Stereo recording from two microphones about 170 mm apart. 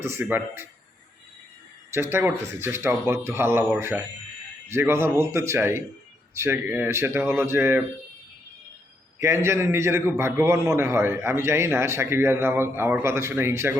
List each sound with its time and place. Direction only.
0.0 s a man's voice: 15° right (ahead or behind)
1.9 s a man's voice: 15° right (ahead or behind)
9.2 s a man's voice: 15° right (ahead or behind)